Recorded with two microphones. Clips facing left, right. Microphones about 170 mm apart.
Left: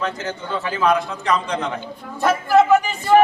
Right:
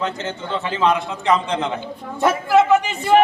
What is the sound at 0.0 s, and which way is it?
A man's voice, 25° right (ahead or behind).